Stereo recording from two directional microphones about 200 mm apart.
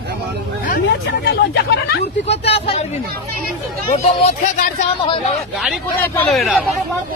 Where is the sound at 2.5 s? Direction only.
30° left (ahead or behind).